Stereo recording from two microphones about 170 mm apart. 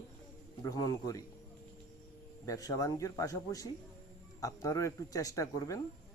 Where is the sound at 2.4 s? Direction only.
20° left (ahead or behind).